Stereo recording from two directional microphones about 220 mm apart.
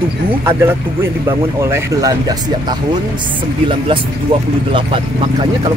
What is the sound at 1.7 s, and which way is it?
Speech, 15° right (ahead or behind).